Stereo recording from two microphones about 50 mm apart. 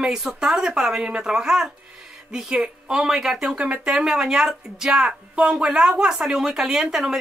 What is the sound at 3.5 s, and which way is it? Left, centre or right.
Speech, right.